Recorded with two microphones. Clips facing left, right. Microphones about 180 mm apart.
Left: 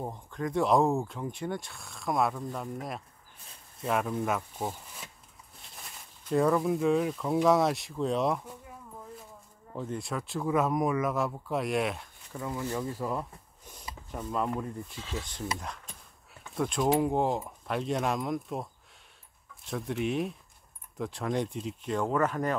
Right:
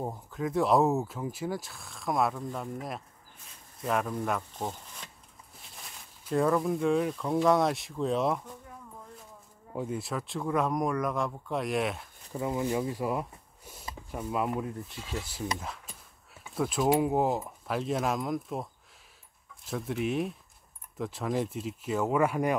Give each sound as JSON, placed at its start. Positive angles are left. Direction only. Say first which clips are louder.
{"t": 0.0, "sound": "speech", "louder": "right 1 dB", "side_deg": -5}
{"t": 9.7, "sound": "speech", "louder": "right 1 dB", "side_deg": -10}
{"t": 12.3, "sound": "speech", "louder": "right 4 dB", "side_deg": -20}
{"t": 15.4, "sound": "a sound", "louder": "right 1 dB", "side_deg": 0}
{"t": 17.0, "sound": "speech", "louder": "right 1 dB", "side_deg": -5}